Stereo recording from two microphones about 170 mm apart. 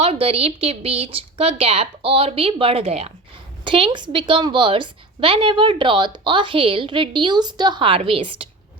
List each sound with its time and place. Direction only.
0.0 s a woman's voice: 35° right (ahead or behind)